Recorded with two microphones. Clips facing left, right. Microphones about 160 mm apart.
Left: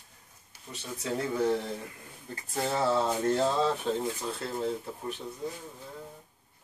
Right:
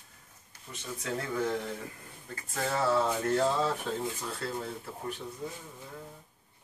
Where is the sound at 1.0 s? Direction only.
15° left (ahead or behind).